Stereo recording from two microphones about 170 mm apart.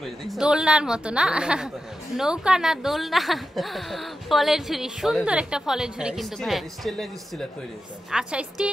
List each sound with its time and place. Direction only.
0.0 s a woman's voice: centre (ahead or behind)